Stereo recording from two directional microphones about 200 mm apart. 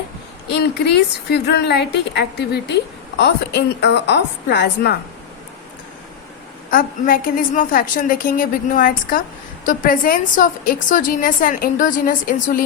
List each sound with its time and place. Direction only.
0.4 s a woman's voice: 55° left (ahead or behind)
6.7 s a woman's voice: 45° left (ahead or behind)